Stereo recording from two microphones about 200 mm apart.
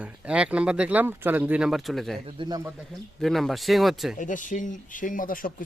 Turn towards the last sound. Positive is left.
turn(degrees=45)  # may be behind; listen again after turning